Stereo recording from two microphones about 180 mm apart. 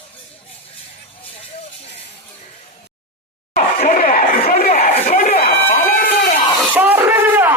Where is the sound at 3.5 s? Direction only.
45° left (ahead or behind).